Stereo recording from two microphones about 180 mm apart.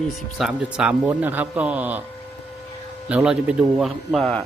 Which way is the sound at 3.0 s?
5° right (ahead or behind).